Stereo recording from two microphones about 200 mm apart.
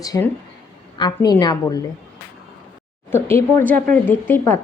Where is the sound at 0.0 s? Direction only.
15° left (ahead or behind).